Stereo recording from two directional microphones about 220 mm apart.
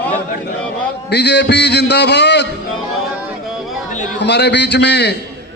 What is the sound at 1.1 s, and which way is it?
A man's voice, 50° left (ahead or behind).